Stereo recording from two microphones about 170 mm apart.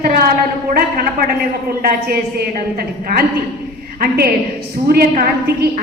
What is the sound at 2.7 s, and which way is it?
A woman's voice, 60° right (ahead or behind).